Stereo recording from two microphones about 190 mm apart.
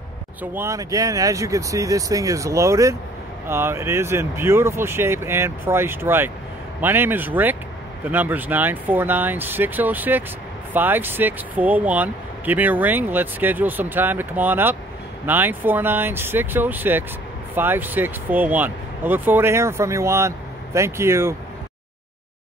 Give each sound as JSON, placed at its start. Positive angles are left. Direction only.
{"t": 0.4, "sound": "speech", "side_deg": -15}